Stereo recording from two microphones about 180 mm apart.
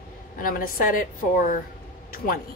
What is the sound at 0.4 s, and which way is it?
A woman's voice, 50° left (ahead or behind).